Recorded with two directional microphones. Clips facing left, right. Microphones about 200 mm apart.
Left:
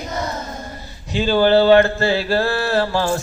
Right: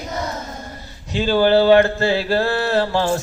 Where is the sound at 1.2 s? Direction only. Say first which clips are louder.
Left 1 dB; 5° right (ahead or behind).